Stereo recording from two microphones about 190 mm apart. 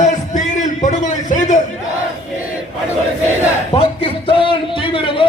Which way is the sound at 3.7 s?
30° left (ahead or behind).